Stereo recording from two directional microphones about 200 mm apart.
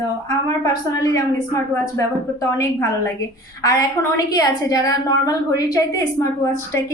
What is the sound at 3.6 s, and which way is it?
A woman's voice, 15° left (ahead or behind).